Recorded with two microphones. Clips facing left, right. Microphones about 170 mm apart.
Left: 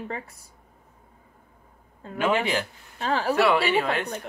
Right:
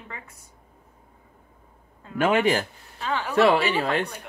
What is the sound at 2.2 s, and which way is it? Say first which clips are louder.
Speech: right 3 dB; 40° right (ahead or behind).